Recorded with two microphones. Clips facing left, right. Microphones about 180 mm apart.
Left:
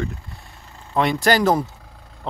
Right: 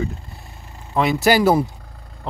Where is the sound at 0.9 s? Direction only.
5° right (ahead or behind).